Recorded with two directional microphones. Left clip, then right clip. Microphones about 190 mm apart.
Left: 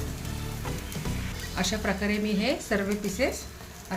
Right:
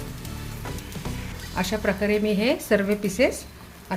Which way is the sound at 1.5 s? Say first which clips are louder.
Right 4 dB; 40° right (ahead or behind).